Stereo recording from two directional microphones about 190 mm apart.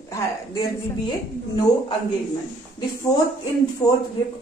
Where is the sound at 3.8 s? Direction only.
20° left (ahead or behind).